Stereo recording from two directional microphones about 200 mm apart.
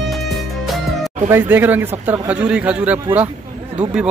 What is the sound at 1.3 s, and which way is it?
Speech, 10° right (ahead or behind).